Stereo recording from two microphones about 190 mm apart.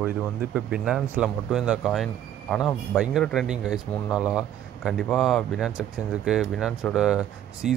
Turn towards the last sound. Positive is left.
turn(degrees=-5)  # may be behind; listen again after turning